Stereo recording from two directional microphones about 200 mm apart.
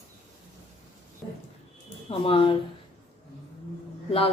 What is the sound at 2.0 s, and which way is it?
Speech, 25° left (ahead or behind).